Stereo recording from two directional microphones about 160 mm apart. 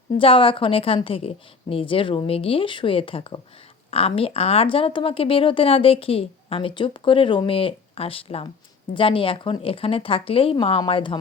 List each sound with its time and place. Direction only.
0.2 s speech: 35° left (ahead or behind)